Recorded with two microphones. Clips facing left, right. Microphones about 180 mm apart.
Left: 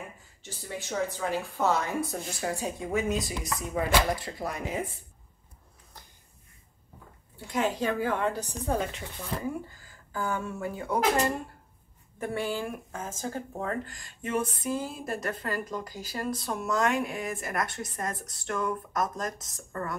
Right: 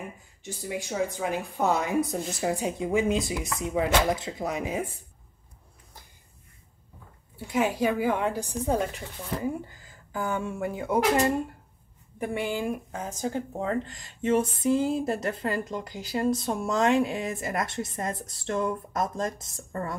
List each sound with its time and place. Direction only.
0.4 s a woman's voice: 15° right (ahead or behind)
7.4 s a woman's voice: 10° right (ahead or behind)
9.8 s speech: 20° right (ahead or behind)
12.2 s a woman's voice: 15° right (ahead or behind)